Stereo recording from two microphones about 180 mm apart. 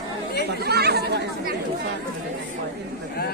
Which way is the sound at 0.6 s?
65° right (ahead or behind).